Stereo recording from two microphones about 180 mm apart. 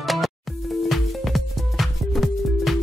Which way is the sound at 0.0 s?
Centre (ahead or behind).